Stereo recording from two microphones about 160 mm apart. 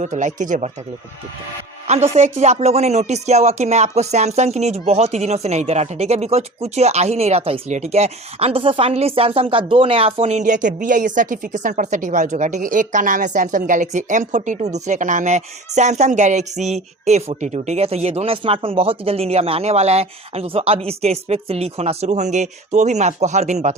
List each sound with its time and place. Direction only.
0.0 s a woman's voice: 50° right (ahead or behind)
1.9 s a woman's voice: 45° right (ahead or behind)